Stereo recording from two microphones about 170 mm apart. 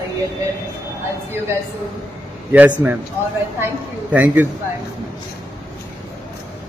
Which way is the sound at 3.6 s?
10° right (ahead or behind).